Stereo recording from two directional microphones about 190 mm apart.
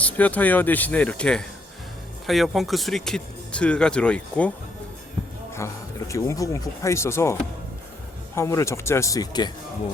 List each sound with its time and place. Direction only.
0.0 s speech: 10° left (ahead or behind)
5.5 s speech: 15° left (ahead or behind)
8.4 s speech: 15° left (ahead or behind)